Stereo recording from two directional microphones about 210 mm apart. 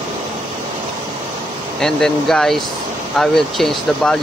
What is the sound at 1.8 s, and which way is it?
Speech, centre (ahead or behind).